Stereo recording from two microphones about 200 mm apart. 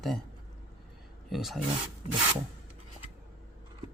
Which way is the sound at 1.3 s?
Centre (ahead or behind).